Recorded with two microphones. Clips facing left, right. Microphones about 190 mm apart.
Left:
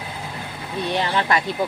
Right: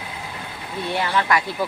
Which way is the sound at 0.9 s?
25° left (ahead or behind).